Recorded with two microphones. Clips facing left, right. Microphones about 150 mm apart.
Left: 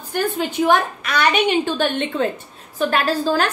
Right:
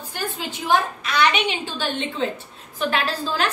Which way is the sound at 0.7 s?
55° left (ahead or behind).